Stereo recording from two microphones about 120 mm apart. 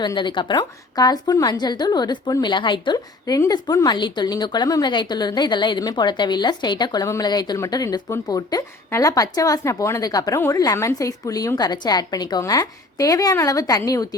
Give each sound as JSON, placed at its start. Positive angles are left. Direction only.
{"t": 0.0, "sound": "a woman's voice", "side_deg": 40}